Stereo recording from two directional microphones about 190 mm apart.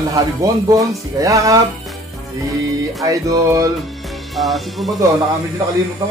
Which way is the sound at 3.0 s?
20° right (ahead or behind).